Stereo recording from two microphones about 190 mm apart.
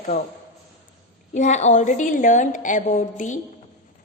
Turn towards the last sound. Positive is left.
turn(degrees=40)  # may be behind; listen again after turning